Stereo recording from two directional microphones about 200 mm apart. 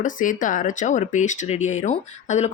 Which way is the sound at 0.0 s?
40° left (ahead or behind).